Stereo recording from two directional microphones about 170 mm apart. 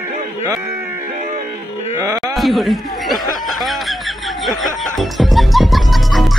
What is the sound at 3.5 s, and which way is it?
Music, centre (ahead or behind).